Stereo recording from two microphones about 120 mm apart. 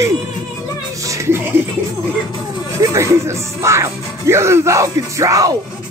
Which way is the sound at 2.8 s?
25° right (ahead or behind).